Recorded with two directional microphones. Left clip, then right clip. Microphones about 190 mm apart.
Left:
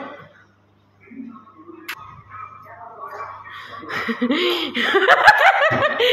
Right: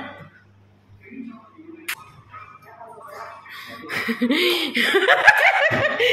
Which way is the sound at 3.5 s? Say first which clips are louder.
Right 1 dB; 25° right (ahead or behind).